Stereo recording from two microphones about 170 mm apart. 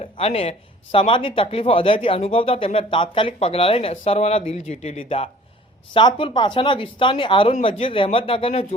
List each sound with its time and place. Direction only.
0.0 s speech: 35° left (ahead or behind)